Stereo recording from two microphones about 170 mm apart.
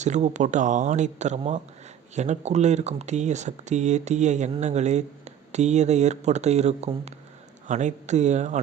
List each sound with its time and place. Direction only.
0.0 s speech: 45° right (ahead or behind)